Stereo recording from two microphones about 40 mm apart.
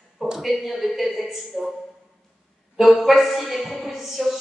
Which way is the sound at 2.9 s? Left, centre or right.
Centre.